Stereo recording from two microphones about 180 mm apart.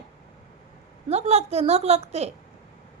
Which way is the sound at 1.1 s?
35° right (ahead or behind).